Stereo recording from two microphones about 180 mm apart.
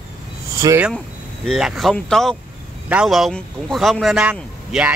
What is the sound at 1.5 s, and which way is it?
Speech, centre (ahead or behind).